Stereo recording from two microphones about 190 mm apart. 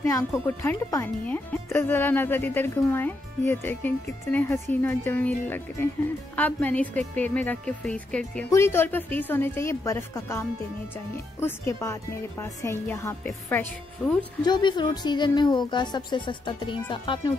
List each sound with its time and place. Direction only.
0.6 s speech: 15° left (ahead or behind)
14.4 s a woman's voice: 25° left (ahead or behind)